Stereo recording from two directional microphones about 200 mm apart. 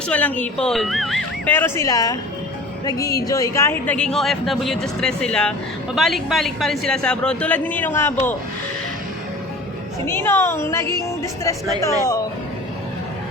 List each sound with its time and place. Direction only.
0.1 s speech: 5° left (ahead or behind)
10.1 s speech: 10° left (ahead or behind)